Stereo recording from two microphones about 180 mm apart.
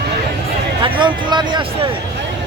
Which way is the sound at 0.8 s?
25° right (ahead or behind).